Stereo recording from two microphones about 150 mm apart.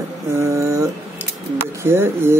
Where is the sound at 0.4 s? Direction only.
20° right (ahead or behind).